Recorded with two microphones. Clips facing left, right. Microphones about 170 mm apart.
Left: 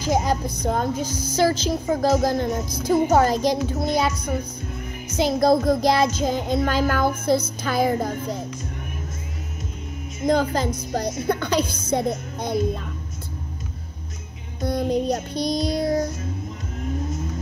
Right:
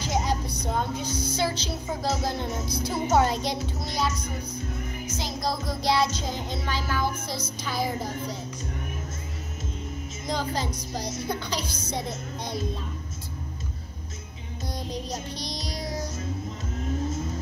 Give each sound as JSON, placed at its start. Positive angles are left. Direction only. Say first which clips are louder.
{"t": 0.0, "sound": "music", "louder": "left 6 dB", "side_deg": 50}
{"t": 3.8, "sound": "music", "louder": "left 7 dB", "side_deg": 55}
{"t": 5.1, "sound": "music", "louder": "left 13 dB", "side_deg": 60}
{"t": 10.2, "sound": "music", "louder": "left 9 dB", "side_deg": 50}
{"t": 14.6, "sound": "music", "louder": "left 12 dB", "side_deg": 55}